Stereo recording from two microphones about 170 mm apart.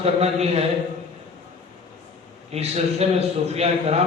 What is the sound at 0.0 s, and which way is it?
Speech, 40° right (ahead or behind).